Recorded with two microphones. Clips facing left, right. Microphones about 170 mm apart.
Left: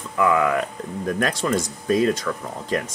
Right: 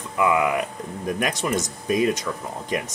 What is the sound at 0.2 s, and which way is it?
Speech, 15° right (ahead or behind).